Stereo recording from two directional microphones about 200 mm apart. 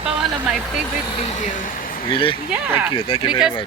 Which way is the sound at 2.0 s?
25° left (ahead or behind).